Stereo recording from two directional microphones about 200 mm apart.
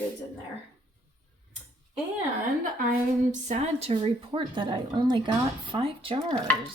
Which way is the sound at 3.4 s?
35° right (ahead or behind).